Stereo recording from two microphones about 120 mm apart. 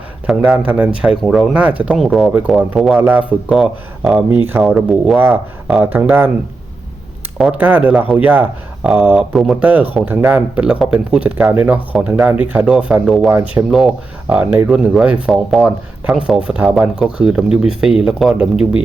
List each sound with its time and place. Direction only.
0.3 s speech: 5° right (ahead or behind)
5.3 s speech: 10° right (ahead or behind)
7.3 s speech: 10° right (ahead or behind)
9.3 s speech: centre (ahead or behind)
9.6 s speech: 15° right (ahead or behind)